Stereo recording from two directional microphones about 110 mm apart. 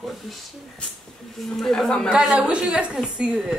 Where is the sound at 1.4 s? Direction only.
Centre (ahead or behind).